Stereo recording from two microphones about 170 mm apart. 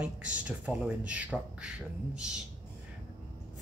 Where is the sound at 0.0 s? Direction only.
5° right (ahead or behind).